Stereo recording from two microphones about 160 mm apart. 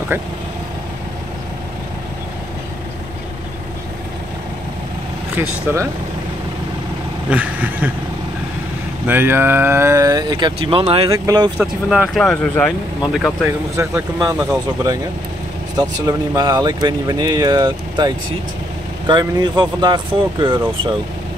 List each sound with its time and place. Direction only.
5.3 s speech: 15° right (ahead or behind)
7.2 s speech: 10° right (ahead or behind)
9.0 s speech: 10° right (ahead or behind); by 11.1 s 35° right (ahead or behind)
11.1 s speech: 25° right (ahead or behind)
11.5 s speech: 5° right (ahead or behind)
13.7 s speech: 20° right (ahead or behind)
15.7 s speech: 25° right (ahead or behind)